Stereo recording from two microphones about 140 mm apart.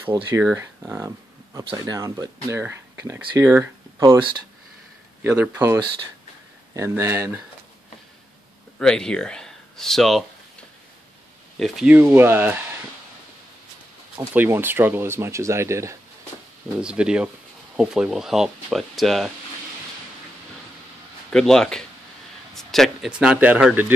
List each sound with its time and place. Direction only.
0.1 s speech: 15° right (ahead or behind)
1.6 s speech: 35° right (ahead or behind)
2.0 s speech: 25° right (ahead or behind)
5.2 s speech: 10° right (ahead or behind)
8.7 s speech: 5° left (ahead or behind)
11.5 s speech: centre (ahead or behind)
14.3 s speech: 15° right (ahead or behind)
16.7 s speech: 5° right (ahead or behind)
21.3 s speech: 5° left (ahead or behind); by 23.9 s 10° right (ahead or behind)